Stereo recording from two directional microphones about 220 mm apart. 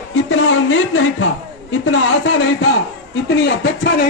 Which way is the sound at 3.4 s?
55° left (ahead or behind).